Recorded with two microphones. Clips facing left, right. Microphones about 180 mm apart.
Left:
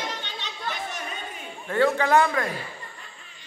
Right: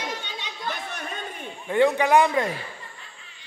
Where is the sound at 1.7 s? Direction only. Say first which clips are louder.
Right 2 dB; 15° right (ahead or behind).